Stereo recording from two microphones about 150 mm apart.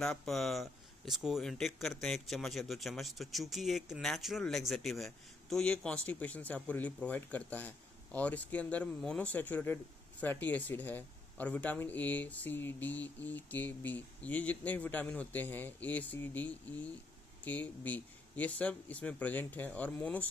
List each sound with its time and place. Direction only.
0.0 s speech: 5° left (ahead or behind)